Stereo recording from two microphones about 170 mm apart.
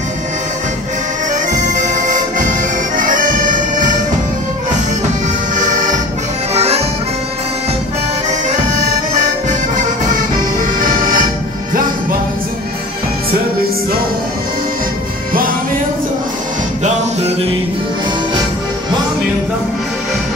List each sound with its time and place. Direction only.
1.3 s bagpipes: 45° right (ahead or behind)
3.0 s music: 50° right (ahead or behind)
5.6 s accordion: 50° right (ahead or behind)
6.5 s music: 40° right (ahead or behind)
9.1 s accordion: 45° right (ahead or behind)
10.6 s music: 55° right (ahead or behind)